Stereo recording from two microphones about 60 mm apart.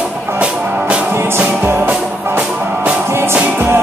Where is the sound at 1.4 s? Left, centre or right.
Right.